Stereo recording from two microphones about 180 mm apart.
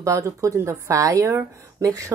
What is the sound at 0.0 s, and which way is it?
Speech, 15° right (ahead or behind).